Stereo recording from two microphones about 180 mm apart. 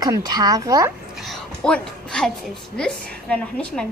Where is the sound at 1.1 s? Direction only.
Centre (ahead or behind).